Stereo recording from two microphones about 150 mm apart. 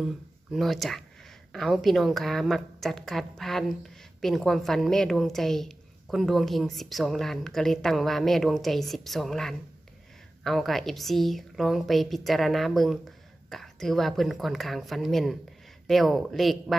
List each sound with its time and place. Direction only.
0.0 s a woman's voice: centre (ahead or behind)